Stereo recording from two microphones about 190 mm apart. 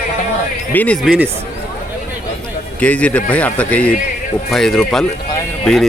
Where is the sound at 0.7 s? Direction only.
10° left (ahead or behind).